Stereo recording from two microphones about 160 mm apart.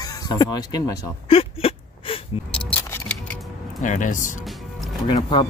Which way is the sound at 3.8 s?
50° left (ahead or behind).